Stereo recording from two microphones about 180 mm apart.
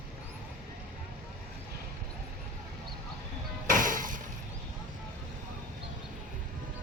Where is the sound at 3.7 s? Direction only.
50° right (ahead or behind).